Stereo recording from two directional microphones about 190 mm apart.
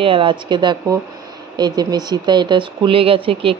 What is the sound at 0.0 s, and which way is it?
Speech, 25° right (ahead or behind).